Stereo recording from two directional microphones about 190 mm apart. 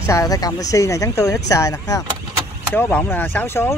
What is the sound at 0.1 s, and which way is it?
Speech, 20° left (ahead or behind).